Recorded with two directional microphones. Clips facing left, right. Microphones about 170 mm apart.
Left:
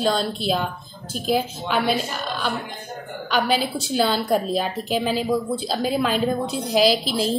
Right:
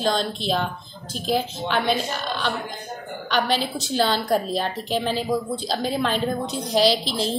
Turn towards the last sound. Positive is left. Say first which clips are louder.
# left 1 dB
turn(degrees=5)  # may be behind; listen again after turning